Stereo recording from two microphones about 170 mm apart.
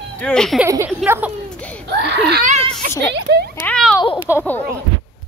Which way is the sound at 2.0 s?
75° right (ahead or behind).